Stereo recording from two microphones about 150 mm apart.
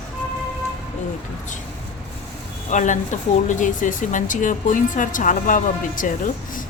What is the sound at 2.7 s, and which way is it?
A woman's voice, 55° left (ahead or behind).